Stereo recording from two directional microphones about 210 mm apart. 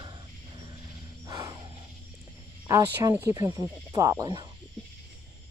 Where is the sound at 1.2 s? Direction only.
15° right (ahead or behind).